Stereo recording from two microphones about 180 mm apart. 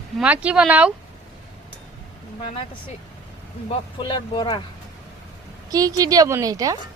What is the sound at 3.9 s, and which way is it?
Speech, 25° left (ahead or behind).